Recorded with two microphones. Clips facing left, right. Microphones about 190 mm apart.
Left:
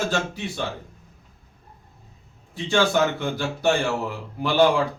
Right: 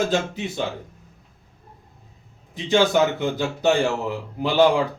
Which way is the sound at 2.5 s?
20° right (ahead or behind).